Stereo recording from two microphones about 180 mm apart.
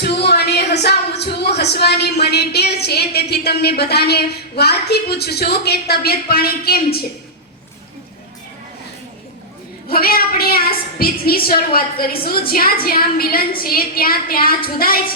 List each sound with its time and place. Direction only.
0.0 s speech: 65° left (ahead or behind)
9.9 s a woman's voice: 55° left (ahead or behind)